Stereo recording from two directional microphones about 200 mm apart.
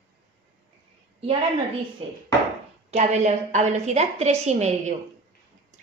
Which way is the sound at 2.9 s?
35° right (ahead or behind).